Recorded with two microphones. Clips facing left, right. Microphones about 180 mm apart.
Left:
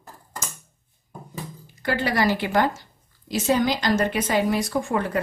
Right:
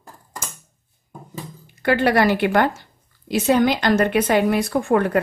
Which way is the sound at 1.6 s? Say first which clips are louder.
Right 7 dB; 60° right (ahead or behind).